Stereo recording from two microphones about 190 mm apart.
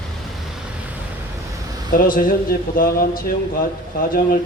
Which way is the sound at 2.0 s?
50° left (ahead or behind).